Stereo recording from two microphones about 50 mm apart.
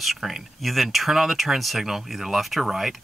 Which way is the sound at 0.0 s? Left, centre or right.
Centre.